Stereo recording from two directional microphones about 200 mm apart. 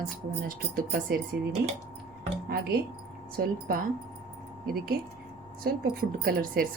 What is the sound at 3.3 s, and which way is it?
Speech, 45° right (ahead or behind).